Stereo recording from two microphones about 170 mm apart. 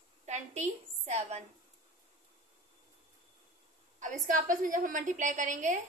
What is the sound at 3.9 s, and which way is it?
A woman's voice, 50° right (ahead or behind).